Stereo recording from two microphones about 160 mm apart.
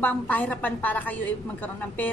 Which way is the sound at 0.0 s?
10° left (ahead or behind).